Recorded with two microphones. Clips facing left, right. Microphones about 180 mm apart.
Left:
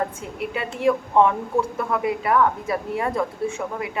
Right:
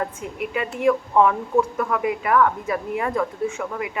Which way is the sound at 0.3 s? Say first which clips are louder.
Right 1 dB; 30° left (ahead or behind).